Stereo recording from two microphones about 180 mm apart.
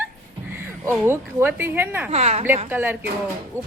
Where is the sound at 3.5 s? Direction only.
10° left (ahead or behind).